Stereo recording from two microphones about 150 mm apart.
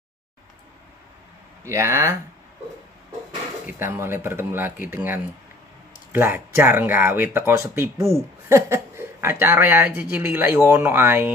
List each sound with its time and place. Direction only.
1.6 s speech: 20° right (ahead or behind)
3.6 s speech: 15° right (ahead or behind)